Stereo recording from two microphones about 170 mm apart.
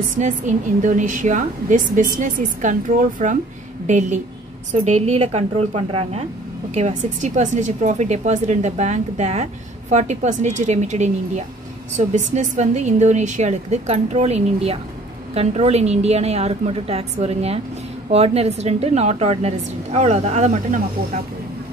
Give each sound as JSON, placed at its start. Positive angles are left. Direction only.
{"t": 0.0, "sound": "a woman's voice", "side_deg": -45}